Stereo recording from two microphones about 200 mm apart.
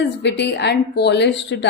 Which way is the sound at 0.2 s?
60° left (ahead or behind).